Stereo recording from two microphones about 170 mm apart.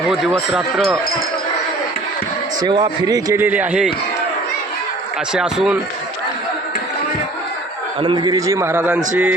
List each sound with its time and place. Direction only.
0.1 s speech: centre (ahead or behind)
2.6 s a man's voice: 25° right (ahead or behind); by 3.8 s 10° right (ahead or behind)
5.3 s speech: 5° right (ahead or behind)
8.0 s a man's voice: 25° right (ahead or behind)